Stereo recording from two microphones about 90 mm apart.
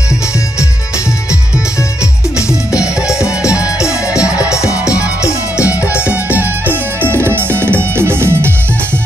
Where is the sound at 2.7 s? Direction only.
10° right (ahead or behind).